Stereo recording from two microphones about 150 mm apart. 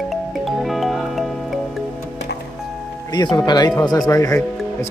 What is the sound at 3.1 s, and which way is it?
Speech, 30° left (ahead or behind).